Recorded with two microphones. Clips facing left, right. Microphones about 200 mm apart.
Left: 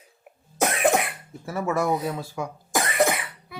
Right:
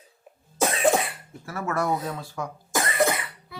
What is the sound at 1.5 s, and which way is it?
A child's voice, 15° left (ahead or behind).